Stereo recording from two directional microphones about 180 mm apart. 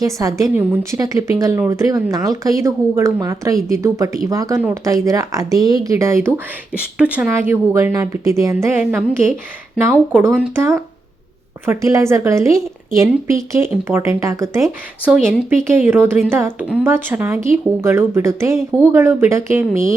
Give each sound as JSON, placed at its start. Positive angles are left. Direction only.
{"t": 0.0, "sound": "a woman's voice", "side_deg": -20}